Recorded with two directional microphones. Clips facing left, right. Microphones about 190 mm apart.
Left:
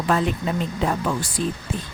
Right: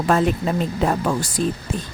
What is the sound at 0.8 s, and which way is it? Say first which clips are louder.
Speech: right 3 dB; 40° right (ahead or behind).